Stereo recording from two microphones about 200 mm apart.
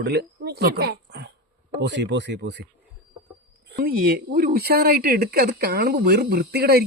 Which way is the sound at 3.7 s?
50° right (ahead or behind).